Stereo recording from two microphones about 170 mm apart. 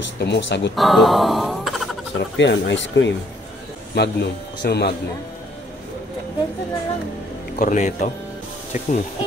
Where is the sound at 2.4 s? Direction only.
90° left.